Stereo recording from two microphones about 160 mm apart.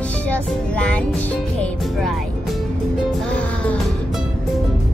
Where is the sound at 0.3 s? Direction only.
5° left (ahead or behind).